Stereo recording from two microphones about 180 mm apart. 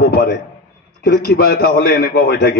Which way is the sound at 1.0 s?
60° left (ahead or behind).